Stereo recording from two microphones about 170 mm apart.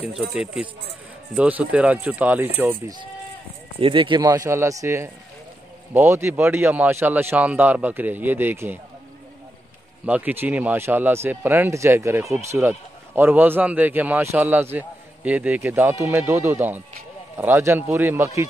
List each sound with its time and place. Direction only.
0.3 s a man's voice: 5° right (ahead or behind)
3.8 s a man's voice: 30° right (ahead or behind); by 8.7 s 10° right (ahead or behind)
10.0 s a man's voice: 10° right (ahead or behind)